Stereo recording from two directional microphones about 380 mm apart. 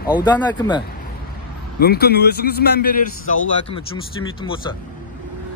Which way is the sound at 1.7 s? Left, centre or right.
Left.